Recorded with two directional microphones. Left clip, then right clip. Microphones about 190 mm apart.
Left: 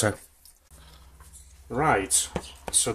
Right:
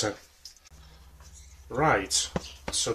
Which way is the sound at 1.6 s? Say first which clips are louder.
Left 1 dB; 35° left (ahead or behind).